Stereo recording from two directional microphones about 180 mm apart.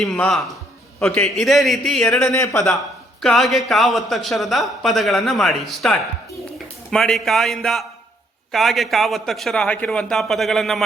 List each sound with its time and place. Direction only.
0.0 s a man's voice: centre (ahead or behind)
2.3 s speech: 15° left (ahead or behind)
3.2 s a man's voice: centre (ahead or behind)